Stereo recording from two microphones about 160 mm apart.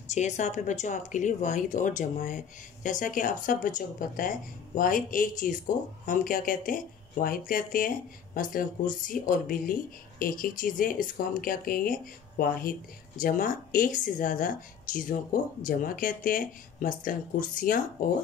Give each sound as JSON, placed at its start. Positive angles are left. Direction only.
{"t": 0.1, "sound": "speech", "side_deg": 45}